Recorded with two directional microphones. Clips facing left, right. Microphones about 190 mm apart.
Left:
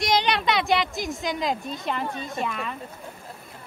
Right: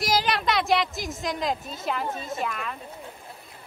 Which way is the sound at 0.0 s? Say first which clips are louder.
Left 2 dB; centre (ahead or behind).